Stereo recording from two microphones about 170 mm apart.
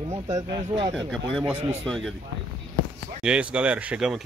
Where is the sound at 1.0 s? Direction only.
5° left (ahead or behind).